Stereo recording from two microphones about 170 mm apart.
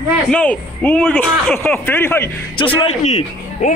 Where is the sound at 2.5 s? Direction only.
30° left (ahead or behind).